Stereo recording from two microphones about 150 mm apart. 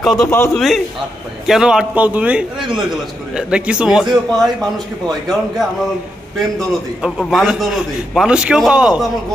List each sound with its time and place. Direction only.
0.2 s a man's voice: 20° left (ahead or behind)
0.6 s a man's voice: centre (ahead or behind)
7.0 s a man's voice: centre (ahead or behind)